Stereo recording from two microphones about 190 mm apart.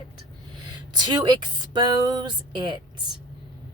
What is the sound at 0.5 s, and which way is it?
Speech, 25° right (ahead or behind).